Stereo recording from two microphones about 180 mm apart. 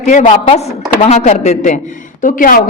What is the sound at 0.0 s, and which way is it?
A woman's voice, 45° left (ahead or behind).